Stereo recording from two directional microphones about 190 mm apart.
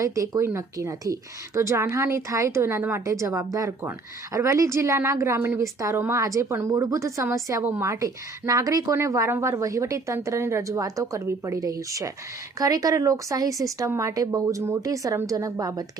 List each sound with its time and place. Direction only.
0.0 s speech: 15° right (ahead or behind)